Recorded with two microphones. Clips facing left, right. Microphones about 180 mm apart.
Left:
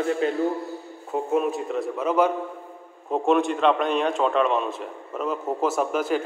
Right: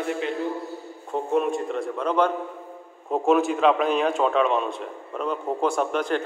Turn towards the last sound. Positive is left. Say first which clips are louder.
# left 1 dB
turn(degrees=5)  # may be behind; listen again after turning